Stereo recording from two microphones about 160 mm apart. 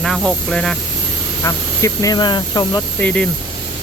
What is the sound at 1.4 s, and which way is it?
Speech, 20° left (ahead or behind).